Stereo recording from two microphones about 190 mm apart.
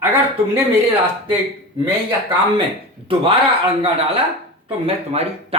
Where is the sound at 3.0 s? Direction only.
30° right (ahead or behind).